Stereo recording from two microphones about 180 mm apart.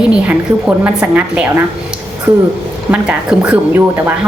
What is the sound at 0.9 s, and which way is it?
Speech, 10° right (ahead or behind).